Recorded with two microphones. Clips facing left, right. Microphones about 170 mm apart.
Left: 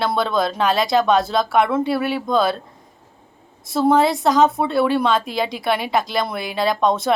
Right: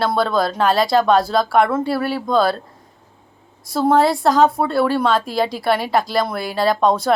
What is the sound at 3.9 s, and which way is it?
A woman's voice, 20° left (ahead or behind).